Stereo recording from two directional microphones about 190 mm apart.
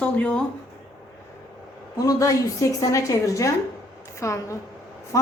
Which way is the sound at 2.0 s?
15° left (ahead or behind).